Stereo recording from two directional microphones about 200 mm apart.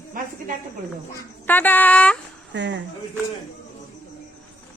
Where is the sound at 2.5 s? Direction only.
65° right (ahead or behind).